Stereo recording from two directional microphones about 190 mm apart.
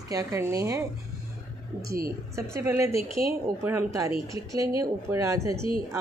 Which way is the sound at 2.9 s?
30° left (ahead or behind).